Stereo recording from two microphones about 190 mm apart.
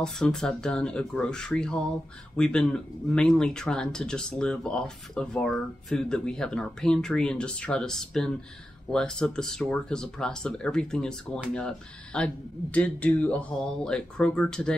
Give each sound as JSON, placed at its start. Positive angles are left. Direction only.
{"t": 0.0, "sound": "speech", "side_deg": 5}